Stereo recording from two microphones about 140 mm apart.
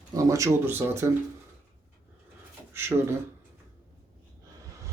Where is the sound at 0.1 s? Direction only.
25° right (ahead or behind).